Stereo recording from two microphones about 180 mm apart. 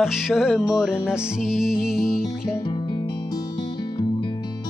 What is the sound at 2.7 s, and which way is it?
Music, 25° left (ahead or behind).